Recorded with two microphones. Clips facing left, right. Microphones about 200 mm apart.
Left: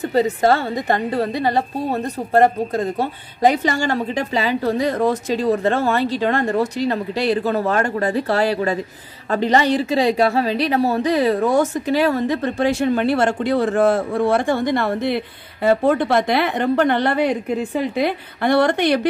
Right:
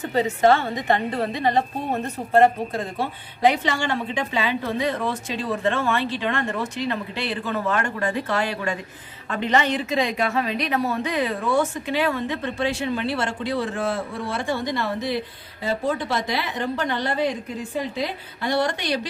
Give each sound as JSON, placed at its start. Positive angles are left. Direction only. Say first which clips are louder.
{"t": 0.1, "sound": "a woman's voice", "louder": "left 1 dB", "side_deg": 35}